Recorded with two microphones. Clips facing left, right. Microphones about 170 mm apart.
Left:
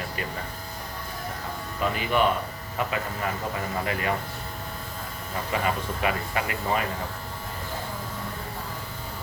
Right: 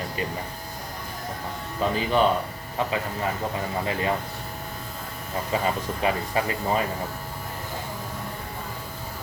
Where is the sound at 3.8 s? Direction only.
25° right (ahead or behind).